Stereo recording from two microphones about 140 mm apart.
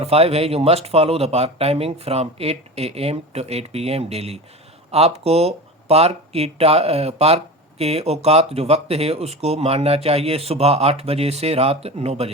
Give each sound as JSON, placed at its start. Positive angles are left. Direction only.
{"t": 0.0, "sound": "speech", "side_deg": -50}